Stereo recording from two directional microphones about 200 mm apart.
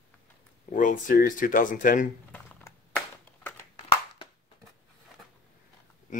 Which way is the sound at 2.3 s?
10° left (ahead or behind).